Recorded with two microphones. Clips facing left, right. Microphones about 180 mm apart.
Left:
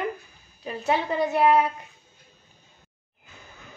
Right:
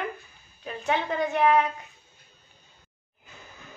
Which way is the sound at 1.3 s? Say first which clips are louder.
Left 2 dB; 35° left (ahead or behind).